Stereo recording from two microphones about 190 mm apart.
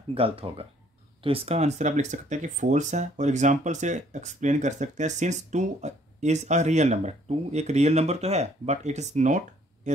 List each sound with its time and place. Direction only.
0.1 s speech: 30° right (ahead or behind)